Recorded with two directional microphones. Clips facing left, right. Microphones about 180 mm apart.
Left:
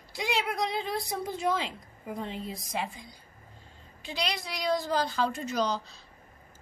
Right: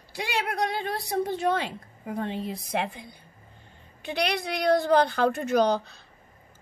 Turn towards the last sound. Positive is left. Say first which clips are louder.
# right 7 dB
turn(degrees=-60)  # may be behind; listen again after turning